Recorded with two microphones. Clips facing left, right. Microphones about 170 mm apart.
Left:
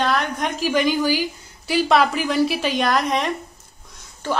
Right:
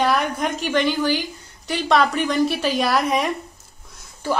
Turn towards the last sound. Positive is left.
turn(degrees=-10)  # may be behind; listen again after turning